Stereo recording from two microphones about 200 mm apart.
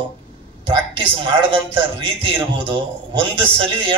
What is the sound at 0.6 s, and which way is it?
A man's voice, 25° right (ahead or behind).